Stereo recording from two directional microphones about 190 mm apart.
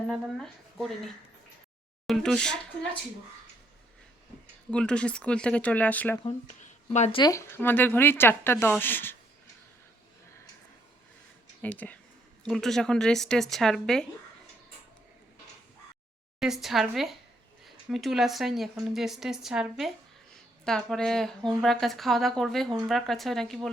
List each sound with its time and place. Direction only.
0.1 s speech: centre (ahead or behind)
4.7 s speech: 5° left (ahead or behind)
6.6 s a sound: 35° left (ahead or behind)
7.2 s speech: 15° left (ahead or behind)
11.6 s speech: 10° left (ahead or behind)
16.4 s speech: centre (ahead or behind)